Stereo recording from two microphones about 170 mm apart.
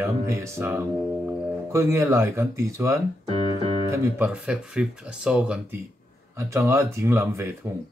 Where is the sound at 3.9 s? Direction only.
10° right (ahead or behind).